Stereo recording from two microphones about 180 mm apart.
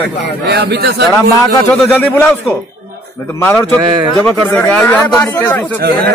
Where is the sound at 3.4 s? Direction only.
10° left (ahead or behind).